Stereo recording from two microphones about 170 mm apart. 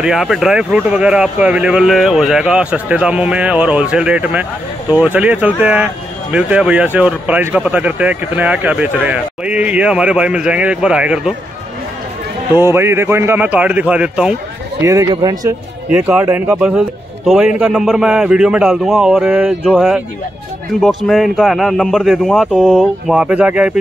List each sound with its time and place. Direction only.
0.0 s speech: centre (ahead or behind)
12.5 s speech: 15° right (ahead or behind)
14.8 s speech: 20° right (ahead or behind)
15.9 s speech: 10° right (ahead or behind)